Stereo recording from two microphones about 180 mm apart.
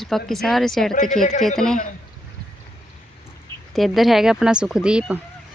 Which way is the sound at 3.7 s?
Centre (ahead or behind).